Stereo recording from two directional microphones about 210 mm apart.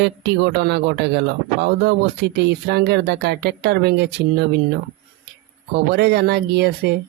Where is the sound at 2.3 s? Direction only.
50° right (ahead or behind).